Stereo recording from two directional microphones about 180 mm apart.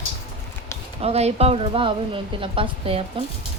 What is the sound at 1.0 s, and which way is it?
A woman's voice, 35° right (ahead or behind).